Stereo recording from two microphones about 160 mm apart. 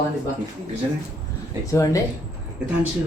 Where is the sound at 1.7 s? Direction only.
20° left (ahead or behind).